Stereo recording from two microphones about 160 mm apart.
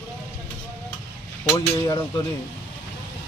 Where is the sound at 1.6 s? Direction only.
30° left (ahead or behind).